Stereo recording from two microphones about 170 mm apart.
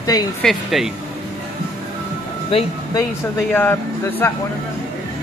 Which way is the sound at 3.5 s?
10° left (ahead or behind).